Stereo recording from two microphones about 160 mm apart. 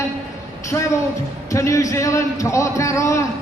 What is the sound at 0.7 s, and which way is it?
A man's voice, 15° left (ahead or behind).